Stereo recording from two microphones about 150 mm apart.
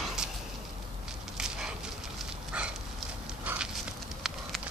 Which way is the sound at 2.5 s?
5° right (ahead or behind).